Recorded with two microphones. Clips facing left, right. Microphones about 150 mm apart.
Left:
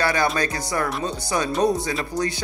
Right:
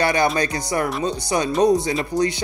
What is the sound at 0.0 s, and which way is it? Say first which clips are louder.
Speech: right 3 dB; 20° right (ahead or behind).